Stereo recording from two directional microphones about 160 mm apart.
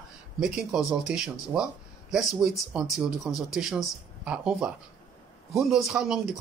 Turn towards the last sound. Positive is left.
turn(degrees=-5)  # may be behind; listen again after turning